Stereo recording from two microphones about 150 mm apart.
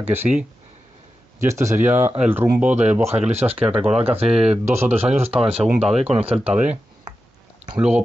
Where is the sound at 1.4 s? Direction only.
20° right (ahead or behind).